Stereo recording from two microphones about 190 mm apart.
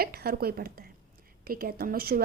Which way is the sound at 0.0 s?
50° right (ahead or behind).